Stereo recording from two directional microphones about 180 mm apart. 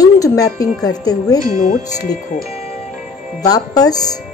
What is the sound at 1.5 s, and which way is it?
Speech, 45° left (ahead or behind).